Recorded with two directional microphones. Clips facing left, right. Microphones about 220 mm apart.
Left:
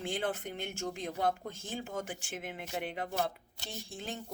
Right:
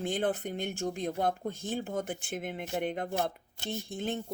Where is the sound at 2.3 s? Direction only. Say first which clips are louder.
Right 5 dB; 40° right (ahead or behind).